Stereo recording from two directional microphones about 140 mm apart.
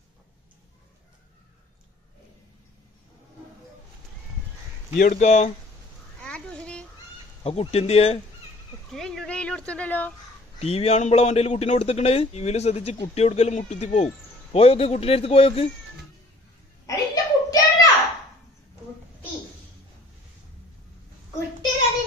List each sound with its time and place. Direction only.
4.9 s speech: 75° left (ahead or behind); by 5.5 s 55° left (ahead or behind)
6.2 s a sound: 5° left (ahead or behind)
7.4 s speech: 45° left (ahead or behind)
8.9 s speech: 5° left (ahead or behind)
10.6 s speech: 50° left (ahead or behind)
16.8 s a sound: 25° left (ahead or behind)